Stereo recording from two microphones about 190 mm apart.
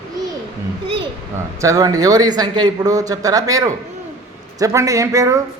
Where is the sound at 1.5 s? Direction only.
15° right (ahead or behind).